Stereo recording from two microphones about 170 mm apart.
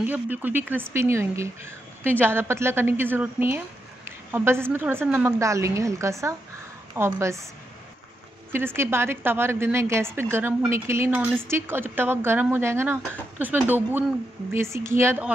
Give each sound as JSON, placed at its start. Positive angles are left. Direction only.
{"t": 0.0, "sound": "a woman's voice", "side_deg": -10}
{"t": 8.5, "sound": "a woman's voice", "side_deg": -15}